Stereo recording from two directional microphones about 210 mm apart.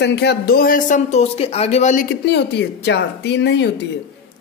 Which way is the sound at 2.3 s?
55° left (ahead or behind).